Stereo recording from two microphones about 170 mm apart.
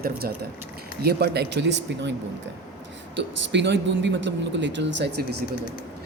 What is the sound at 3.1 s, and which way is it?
Speech, 90° right.